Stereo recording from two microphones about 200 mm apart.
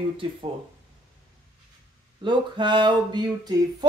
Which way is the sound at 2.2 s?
25° right (ahead or behind).